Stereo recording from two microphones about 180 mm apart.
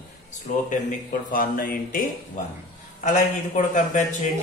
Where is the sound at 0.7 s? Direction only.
50° left (ahead or behind).